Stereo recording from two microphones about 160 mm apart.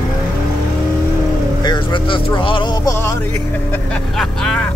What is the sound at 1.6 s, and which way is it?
Speech, 30° left (ahead or behind).